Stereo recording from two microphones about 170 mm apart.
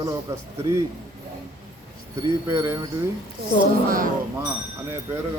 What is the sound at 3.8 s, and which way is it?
Speech, 55° right (ahead or behind).